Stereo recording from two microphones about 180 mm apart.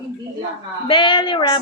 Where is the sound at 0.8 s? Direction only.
30° left (ahead or behind).